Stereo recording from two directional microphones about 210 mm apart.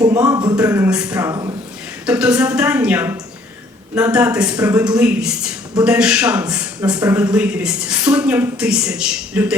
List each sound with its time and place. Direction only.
0.0 s a woman's voice: 10° right (ahead or behind)